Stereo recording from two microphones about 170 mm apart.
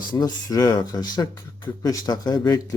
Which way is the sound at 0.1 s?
25° left (ahead or behind).